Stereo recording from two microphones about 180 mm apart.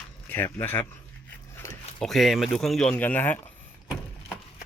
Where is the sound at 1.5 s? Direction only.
10° left (ahead or behind).